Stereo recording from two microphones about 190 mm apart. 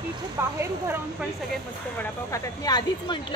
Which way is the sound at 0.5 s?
10° right (ahead or behind).